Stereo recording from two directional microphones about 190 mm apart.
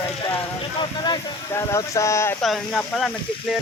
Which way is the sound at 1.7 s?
15° left (ahead or behind).